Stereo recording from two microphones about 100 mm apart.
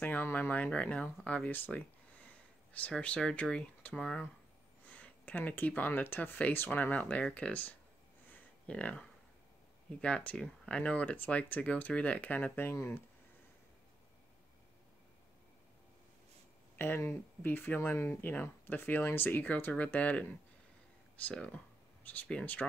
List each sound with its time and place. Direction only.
0.0 s speech: 15° left (ahead or behind)
8.3 s a sound: 10° left (ahead or behind)
9.8 s speech: 10° left (ahead or behind)
16.7 s speech: 20° left (ahead or behind)